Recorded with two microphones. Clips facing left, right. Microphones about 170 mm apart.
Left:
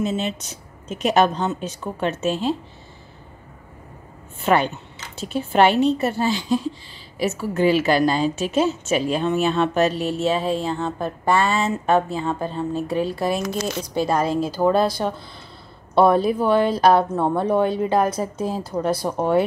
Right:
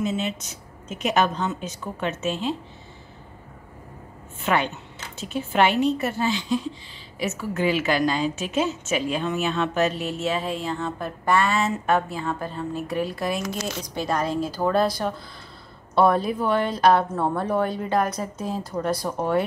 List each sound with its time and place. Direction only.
0.0 s a woman's voice: 30° left (ahead or behind)
4.5 s a woman's voice: 40° left (ahead or behind)
17.1 s a woman's voice: 20° left (ahead or behind)